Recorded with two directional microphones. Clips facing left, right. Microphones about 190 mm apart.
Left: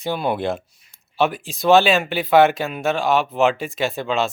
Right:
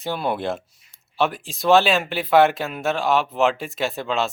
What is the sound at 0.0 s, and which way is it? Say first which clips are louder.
Speech: left 2 dB; centre (ahead or behind).